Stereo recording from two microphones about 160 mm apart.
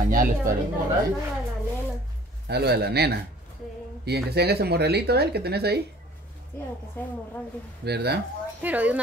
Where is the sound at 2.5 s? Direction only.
90° right.